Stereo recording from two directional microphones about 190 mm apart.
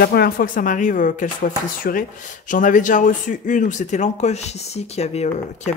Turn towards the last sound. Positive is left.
turn(degrees=35)  # may be behind; listen again after turning